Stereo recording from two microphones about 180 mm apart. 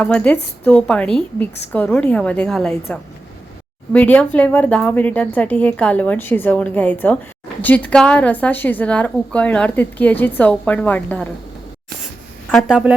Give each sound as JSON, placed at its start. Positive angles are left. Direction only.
{"t": 0.0, "sound": "a woman's voice", "side_deg": 5}
{"t": 3.9, "sound": "a woman's voice", "side_deg": 10}
{"t": 12.5, "sound": "a woman's voice", "side_deg": 0}